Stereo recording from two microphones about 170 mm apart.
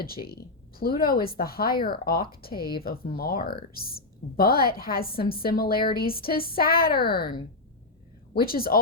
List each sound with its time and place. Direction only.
0.0 s a woman's voice: 60° left (ahead or behind)